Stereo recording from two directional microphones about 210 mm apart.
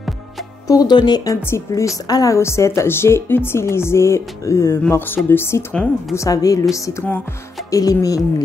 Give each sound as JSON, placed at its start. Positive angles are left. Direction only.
{"t": 0.7, "sound": "a woman's voice", "side_deg": 20}